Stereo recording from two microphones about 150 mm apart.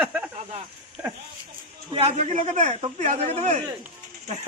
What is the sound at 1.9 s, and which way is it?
Speech, 40° right (ahead or behind).